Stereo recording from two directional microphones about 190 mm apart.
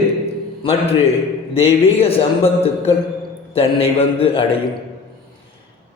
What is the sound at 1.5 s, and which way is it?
A man's voice, 30° left (ahead or behind).